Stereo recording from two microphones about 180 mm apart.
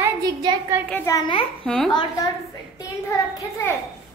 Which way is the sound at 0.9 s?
15° left (ahead or behind).